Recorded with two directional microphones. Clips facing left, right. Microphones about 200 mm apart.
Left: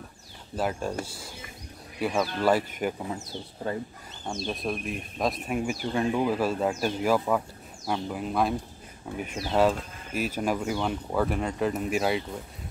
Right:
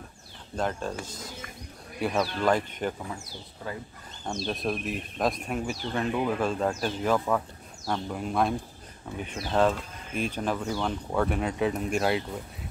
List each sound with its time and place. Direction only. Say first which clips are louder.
0.6 s speech: left 1 dB; 10° left (ahead or behind)
2.0 s speech: even; centre (ahead or behind)
3.0 s speech: left 4 dB; 20° left (ahead or behind)
4.5 s speech: right 1 dB; centre (ahead or behind)